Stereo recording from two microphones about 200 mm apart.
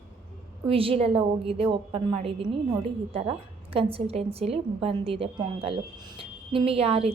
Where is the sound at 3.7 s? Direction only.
30° right (ahead or behind).